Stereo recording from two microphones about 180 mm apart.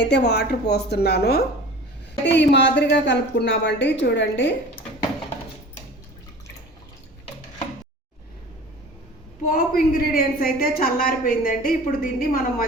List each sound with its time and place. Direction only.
0.0 s a woman's voice: 70° left (ahead or behind)
2.2 s a woman's voice: 75° left (ahead or behind)
9.5 s a woman's voice: 55° left (ahead or behind)